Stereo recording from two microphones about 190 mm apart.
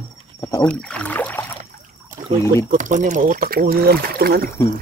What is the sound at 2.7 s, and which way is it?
Speech, 40° right (ahead or behind).